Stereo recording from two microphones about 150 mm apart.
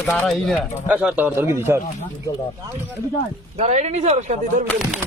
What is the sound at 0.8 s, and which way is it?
Speech, 10° right (ahead or behind).